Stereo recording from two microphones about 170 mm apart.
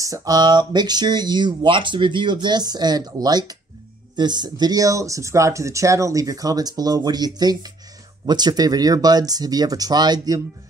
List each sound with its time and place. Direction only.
0.0 s speech: 20° right (ahead or behind)